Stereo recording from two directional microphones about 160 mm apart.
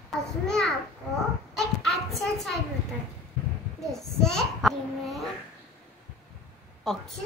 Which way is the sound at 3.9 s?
5° left (ahead or behind).